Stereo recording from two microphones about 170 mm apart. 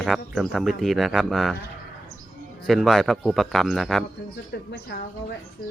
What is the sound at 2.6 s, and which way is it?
Speech, centre (ahead or behind).